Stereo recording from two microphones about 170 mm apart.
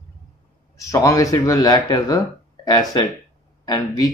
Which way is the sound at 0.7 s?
20° left (ahead or behind).